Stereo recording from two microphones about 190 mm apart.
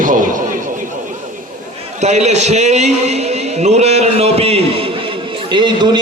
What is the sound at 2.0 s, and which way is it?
A man's voice, 35° right (ahead or behind).